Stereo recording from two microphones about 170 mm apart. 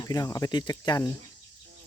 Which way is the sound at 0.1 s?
20° left (ahead or behind).